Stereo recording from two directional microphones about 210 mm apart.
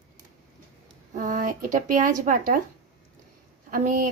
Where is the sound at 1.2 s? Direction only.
40° right (ahead or behind).